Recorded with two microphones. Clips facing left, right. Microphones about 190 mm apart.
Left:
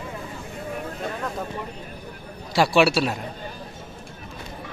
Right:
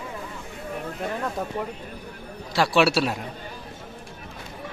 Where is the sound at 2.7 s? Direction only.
Centre (ahead or behind).